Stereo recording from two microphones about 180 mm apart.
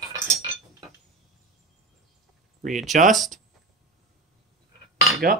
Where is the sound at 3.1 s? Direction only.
Centre (ahead or behind).